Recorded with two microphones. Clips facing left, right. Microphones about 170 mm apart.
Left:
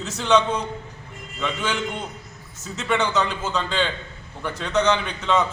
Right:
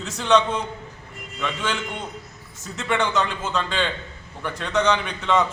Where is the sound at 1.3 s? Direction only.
10° left (ahead or behind).